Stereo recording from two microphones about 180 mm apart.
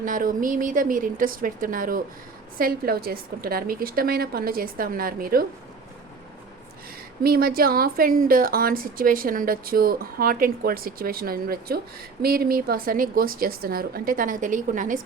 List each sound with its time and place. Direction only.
0.0 s a woman's voice: 50° right (ahead or behind)
7.2 s a woman's voice: 55° right (ahead or behind)